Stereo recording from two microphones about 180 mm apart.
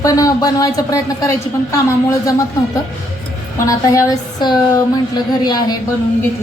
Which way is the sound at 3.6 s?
20° left (ahead or behind).